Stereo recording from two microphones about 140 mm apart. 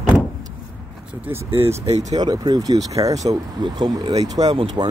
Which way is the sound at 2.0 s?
30° right (ahead or behind).